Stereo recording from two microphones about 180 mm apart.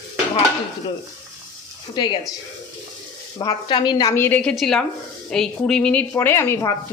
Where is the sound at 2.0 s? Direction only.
25° left (ahead or behind).